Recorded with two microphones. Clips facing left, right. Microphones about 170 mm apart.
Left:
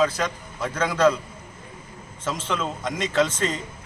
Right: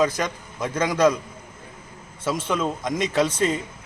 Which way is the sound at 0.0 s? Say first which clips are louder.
Even; 15° right (ahead or behind).